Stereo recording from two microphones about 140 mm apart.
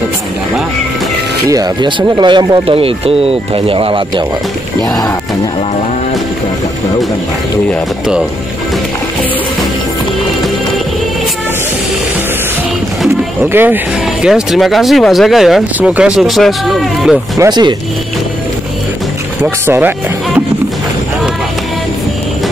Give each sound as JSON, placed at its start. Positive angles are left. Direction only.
{"t": 1.5, "sound": "speech", "side_deg": -30}
{"t": 13.5, "sound": "speech", "side_deg": -15}
{"t": 14.2, "sound": "speech", "side_deg": -5}
{"t": 17.4, "sound": "speech", "side_deg": -30}
{"t": 19.4, "sound": "speech", "side_deg": -15}